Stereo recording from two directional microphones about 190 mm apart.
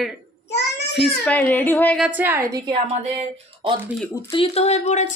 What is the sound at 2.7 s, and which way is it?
A woman's voice, 30° right (ahead or behind).